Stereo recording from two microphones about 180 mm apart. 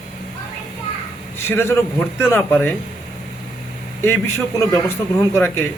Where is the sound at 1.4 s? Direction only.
15° left (ahead or behind).